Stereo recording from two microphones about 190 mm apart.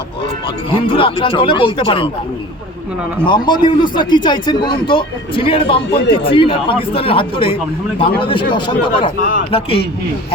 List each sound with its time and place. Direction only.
0.4 s a man's voice: 25° left (ahead or behind)
3.2 s a man's voice: 25° left (ahead or behind)